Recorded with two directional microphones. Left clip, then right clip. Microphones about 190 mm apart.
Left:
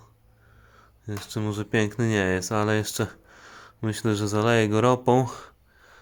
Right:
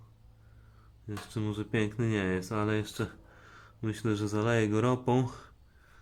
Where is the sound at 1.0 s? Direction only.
45° left (ahead or behind).